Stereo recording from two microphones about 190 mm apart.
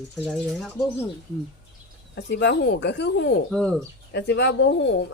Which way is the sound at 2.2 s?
65° left (ahead or behind).